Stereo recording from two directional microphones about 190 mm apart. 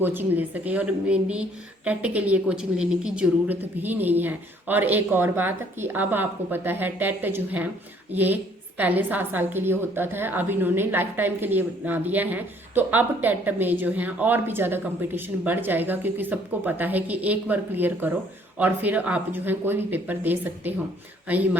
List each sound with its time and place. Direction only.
0.0 s a woman's voice: 10° right (ahead or behind)